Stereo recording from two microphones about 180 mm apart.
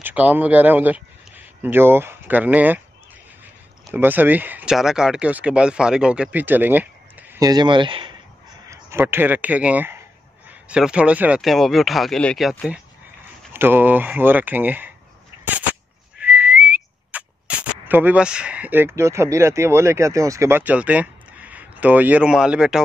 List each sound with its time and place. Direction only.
0.0 s speech: 10° right (ahead or behind)
3.9 s speech: 10° right (ahead or behind)
7.4 s speech: 25° right (ahead or behind)
8.6 s speech: 15° right (ahead or behind)
15.4 s a sound: 10° right (ahead or behind)
16.2 s speech: 10° right (ahead or behind)